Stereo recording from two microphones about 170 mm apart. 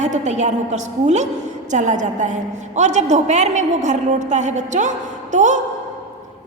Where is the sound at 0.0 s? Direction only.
45° right (ahead or behind).